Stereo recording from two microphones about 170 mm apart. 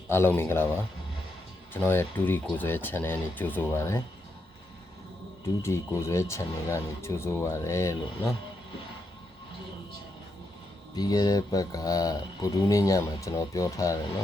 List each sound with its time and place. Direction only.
0.1 s speech: 15° left (ahead or behind)
5.6 s speech: 15° left (ahead or behind)
10.9 s speech: 25° left (ahead or behind)